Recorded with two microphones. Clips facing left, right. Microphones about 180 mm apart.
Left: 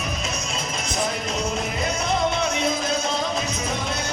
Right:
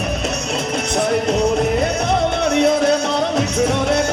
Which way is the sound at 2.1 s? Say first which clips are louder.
Right 3 dB; 65° right (ahead or behind).